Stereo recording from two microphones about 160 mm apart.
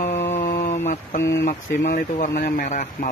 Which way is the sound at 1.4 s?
55° left (ahead or behind).